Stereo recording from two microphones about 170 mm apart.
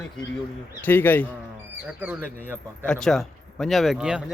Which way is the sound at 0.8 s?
10° left (ahead or behind).